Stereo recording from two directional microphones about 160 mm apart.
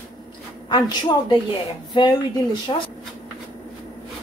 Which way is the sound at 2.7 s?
35° left (ahead or behind).